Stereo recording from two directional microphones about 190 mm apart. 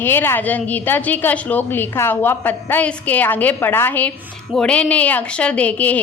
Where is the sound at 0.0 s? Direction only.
10° left (ahead or behind).